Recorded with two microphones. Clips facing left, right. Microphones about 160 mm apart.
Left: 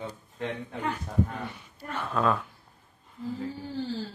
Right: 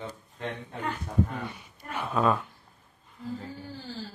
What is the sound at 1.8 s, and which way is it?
Speech, 10° right (ahead or behind).